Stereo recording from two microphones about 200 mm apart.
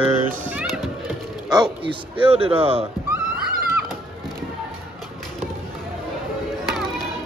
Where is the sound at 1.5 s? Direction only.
20° right (ahead or behind).